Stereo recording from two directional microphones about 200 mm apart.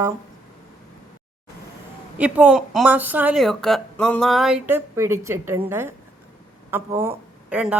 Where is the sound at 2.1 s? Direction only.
10° right (ahead or behind).